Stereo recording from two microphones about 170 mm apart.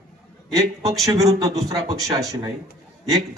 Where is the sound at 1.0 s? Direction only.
20° right (ahead or behind).